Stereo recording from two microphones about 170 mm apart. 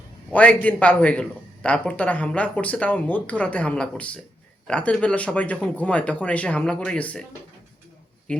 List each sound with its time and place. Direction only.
0.3 s a man's voice: 10° left (ahead or behind)
8.3 s a man's voice: 5° left (ahead or behind)